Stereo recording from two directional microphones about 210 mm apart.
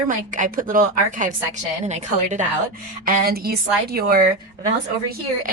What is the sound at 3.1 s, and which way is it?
A woman's voice, 45° right (ahead or behind).